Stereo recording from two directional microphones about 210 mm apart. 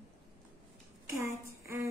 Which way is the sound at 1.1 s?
15° right (ahead or behind).